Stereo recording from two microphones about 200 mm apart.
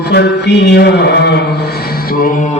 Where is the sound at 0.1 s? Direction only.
55° left (ahead or behind).